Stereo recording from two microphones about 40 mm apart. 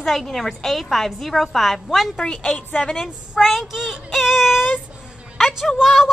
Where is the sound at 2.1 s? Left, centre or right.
Left.